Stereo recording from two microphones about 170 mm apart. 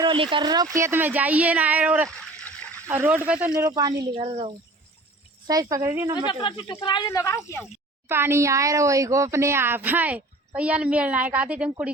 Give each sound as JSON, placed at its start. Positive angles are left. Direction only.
{"t": 0.0, "sound": "speech", "side_deg": -30}
{"t": 2.0, "sound": "a sound", "side_deg": 5}
{"t": 2.8, "sound": "speech", "side_deg": -15}
{"t": 6.1, "sound": "speech", "side_deg": 30}
{"t": 8.0, "sound": "speech", "side_deg": -15}